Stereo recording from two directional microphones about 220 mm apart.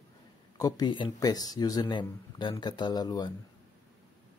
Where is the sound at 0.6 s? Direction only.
15° left (ahead or behind).